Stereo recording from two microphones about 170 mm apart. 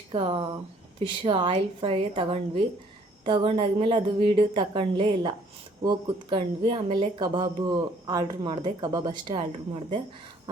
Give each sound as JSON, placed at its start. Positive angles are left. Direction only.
{"t": 0.1, "sound": "a woman's voice", "side_deg": -30}